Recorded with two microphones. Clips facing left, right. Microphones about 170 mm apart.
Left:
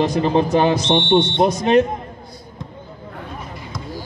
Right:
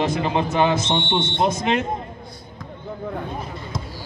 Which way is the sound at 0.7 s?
15° left (ahead or behind).